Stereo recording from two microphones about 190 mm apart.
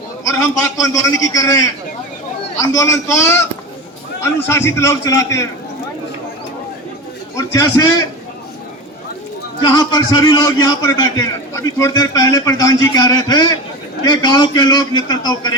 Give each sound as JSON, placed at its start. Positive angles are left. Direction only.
{"t": 0.8, "sound": "a man's voice", "side_deg": 15}
{"t": 2.7, "sound": "a man's voice", "side_deg": 15}
{"t": 4.4, "sound": "a man's voice", "side_deg": 15}
{"t": 7.3, "sound": "a man's voice", "side_deg": 20}
{"t": 9.6, "sound": "a man's voice", "side_deg": 25}